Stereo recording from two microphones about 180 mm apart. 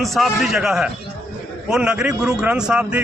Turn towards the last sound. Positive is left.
turn(degrees=-5)  # may be behind; listen again after turning